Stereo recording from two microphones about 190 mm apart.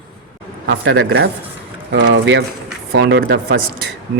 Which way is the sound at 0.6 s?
80° right.